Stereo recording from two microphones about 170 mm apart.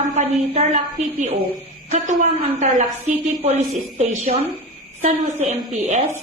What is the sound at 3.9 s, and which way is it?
Speech, 40° right (ahead or behind).